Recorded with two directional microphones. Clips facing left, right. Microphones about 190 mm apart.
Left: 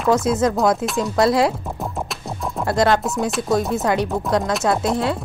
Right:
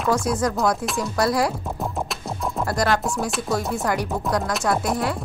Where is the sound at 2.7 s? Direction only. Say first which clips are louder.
Left 6 dB; 25° left (ahead or behind).